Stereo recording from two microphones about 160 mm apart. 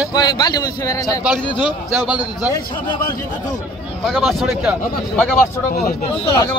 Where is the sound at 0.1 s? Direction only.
25° left (ahead or behind).